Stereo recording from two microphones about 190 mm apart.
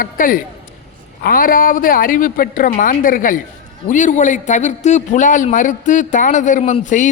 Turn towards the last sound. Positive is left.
turn(degrees=40)  # may be behind; listen again after turning